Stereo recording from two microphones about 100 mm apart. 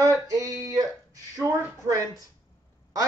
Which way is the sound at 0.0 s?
35° right (ahead or behind).